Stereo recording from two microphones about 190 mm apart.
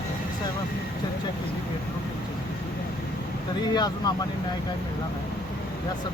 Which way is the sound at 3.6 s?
20° left (ahead or behind).